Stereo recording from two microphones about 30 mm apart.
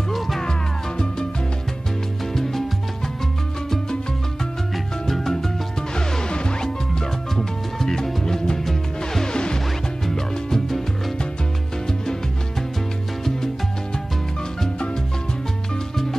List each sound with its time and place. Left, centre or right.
0.4 s music: left
2.3 s salsa music: centre
5.0 s music: centre
5.9 s music: left; by 9.2 s centre
9.2 s music: left
10.3 s music: centre